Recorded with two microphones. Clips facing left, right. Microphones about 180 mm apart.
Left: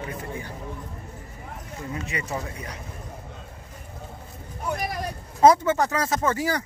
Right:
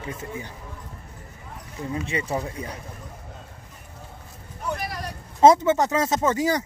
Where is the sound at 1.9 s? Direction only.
30° right (ahead or behind).